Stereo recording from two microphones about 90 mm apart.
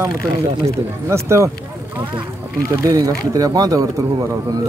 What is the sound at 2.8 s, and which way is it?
Speech, 40° right (ahead or behind).